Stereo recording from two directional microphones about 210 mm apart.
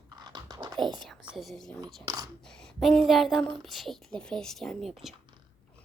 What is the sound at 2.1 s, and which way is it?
Speech, 15° right (ahead or behind).